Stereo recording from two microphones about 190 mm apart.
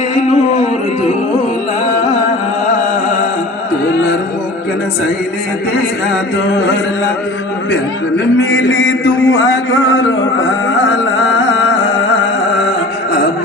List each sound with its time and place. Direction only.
0.1 s music: 35° left (ahead or behind)
5.7 s a sound: 65° left (ahead or behind)
7.7 s a man's voice: 75° left (ahead or behind)